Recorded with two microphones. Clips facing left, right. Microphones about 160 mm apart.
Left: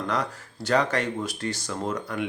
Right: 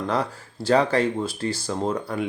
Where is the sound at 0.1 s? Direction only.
30° right (ahead or behind).